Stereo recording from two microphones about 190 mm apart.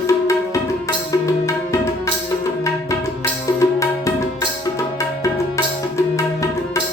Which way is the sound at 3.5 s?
15° left (ahead or behind).